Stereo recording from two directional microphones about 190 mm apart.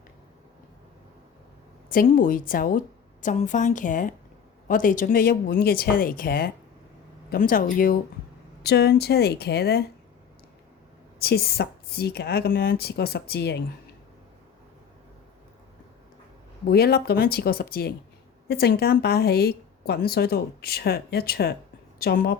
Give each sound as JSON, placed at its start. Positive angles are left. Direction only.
{"t": 1.9, "sound": "a woman's voice", "side_deg": 45}
{"t": 8.6, "sound": "a woman's voice", "side_deg": 60}
{"t": 11.2, "sound": "a woman's voice", "side_deg": 55}
{"t": 16.6, "sound": "a woman's voice", "side_deg": 55}